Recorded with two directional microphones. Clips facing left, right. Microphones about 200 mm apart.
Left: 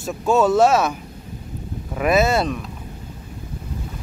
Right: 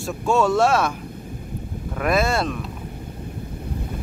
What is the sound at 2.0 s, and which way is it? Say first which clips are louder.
Speech: left 3 dB; 5° left (ahead or behind).